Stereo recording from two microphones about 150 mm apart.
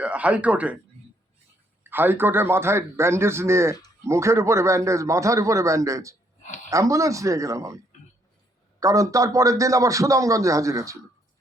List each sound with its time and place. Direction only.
0.0 s a man's voice: 10° right (ahead or behind)
1.8 s a man's voice: 15° right (ahead or behind)
6.4 s a sound: 55° left (ahead or behind)
6.7 s a man's voice: 20° right (ahead or behind)
8.8 s a man's voice: 20° right (ahead or behind)